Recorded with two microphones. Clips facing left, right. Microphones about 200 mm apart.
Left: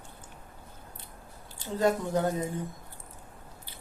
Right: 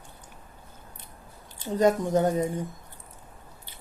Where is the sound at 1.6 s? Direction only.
20° right (ahead or behind).